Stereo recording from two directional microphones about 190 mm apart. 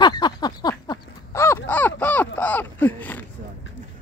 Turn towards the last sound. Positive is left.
turn(degrees=10)  # may be behind; listen again after turning